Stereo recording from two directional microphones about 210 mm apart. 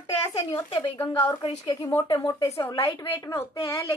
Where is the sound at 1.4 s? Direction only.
20° left (ahead or behind).